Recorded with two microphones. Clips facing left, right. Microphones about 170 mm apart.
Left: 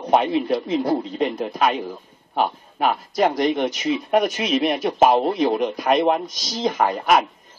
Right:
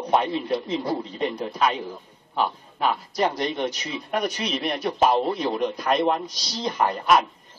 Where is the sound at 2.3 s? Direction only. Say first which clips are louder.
Left 3 dB; 60° left (ahead or behind).